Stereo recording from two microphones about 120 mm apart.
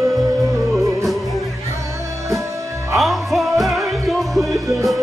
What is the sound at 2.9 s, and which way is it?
Music, centre (ahead or behind).